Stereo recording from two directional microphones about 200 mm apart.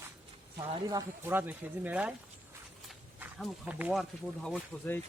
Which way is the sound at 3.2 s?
10° right (ahead or behind).